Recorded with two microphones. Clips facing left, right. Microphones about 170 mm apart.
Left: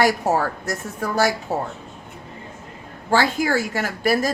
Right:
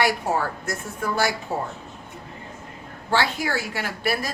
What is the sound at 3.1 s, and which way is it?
A woman's voice, 45° left (ahead or behind).